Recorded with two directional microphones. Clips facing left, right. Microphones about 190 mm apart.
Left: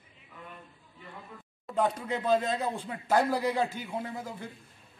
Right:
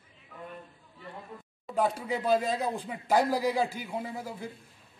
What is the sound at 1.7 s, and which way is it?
Speech, 10° right (ahead or behind).